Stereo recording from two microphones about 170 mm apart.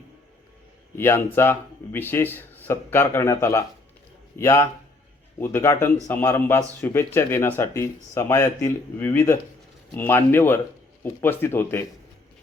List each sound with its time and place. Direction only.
0.9 s speech: 15° left (ahead or behind)